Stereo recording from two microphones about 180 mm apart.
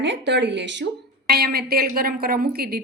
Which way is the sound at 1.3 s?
60° right (ahead or behind).